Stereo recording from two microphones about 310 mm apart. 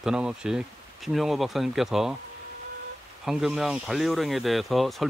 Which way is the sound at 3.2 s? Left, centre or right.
Centre.